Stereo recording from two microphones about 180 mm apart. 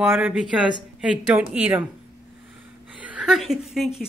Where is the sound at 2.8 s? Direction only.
5° right (ahead or behind).